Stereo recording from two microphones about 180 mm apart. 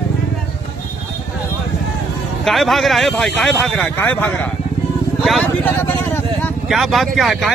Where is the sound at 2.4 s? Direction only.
Centre (ahead or behind).